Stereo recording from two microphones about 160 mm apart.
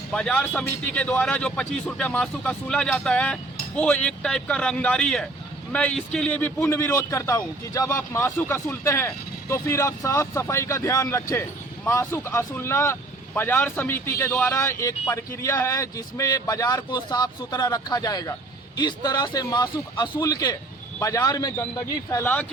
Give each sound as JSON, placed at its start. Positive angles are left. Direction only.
{"t": 0.1, "sound": "a man's voice", "side_deg": 5}